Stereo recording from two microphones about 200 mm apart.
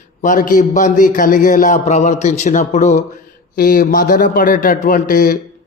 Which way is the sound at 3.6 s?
45° left (ahead or behind).